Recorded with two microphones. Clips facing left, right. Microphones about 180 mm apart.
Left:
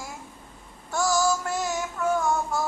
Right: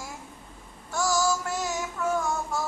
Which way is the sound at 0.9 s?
55° left (ahead or behind).